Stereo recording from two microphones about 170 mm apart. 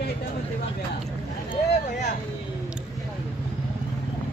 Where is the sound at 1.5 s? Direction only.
40° left (ahead or behind).